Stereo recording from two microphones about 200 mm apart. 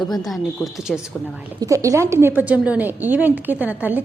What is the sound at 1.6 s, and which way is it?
A woman's voice, 15° right (ahead or behind).